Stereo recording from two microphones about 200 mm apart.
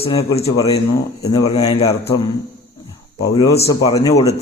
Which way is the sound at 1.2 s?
20° left (ahead or behind).